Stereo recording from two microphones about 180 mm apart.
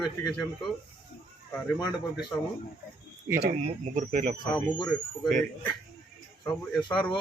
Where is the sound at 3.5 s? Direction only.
40° right (ahead or behind).